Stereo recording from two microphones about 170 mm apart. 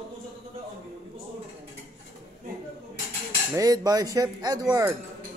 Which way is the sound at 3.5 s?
20° right (ahead or behind).